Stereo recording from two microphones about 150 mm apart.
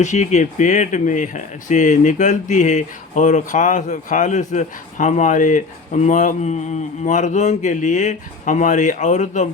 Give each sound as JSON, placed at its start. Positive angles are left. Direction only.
{"t": 0.0, "sound": "speech", "side_deg": 50}